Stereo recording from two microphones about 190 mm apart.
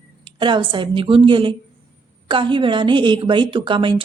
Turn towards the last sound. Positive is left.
turn(degrees=-25)  # may be behind; listen again after turning